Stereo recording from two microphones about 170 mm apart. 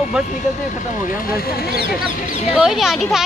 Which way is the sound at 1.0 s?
60° left (ahead or behind).